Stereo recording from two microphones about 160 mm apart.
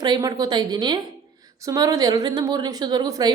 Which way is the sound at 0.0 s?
25° right (ahead or behind).